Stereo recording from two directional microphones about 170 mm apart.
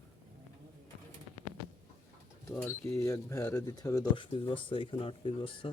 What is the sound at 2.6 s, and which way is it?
Speech, 5° left (ahead or behind).